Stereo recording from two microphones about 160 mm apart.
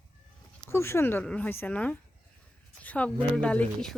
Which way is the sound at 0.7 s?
15° left (ahead or behind).